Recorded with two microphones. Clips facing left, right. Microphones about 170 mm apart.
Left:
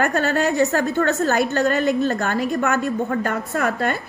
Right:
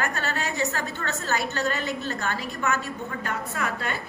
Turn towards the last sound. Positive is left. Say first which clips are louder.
# left 8 dB
turn(degrees=50)  # may be behind; listen again after turning